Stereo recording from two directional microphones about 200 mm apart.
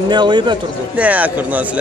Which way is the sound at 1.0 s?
5° right (ahead or behind).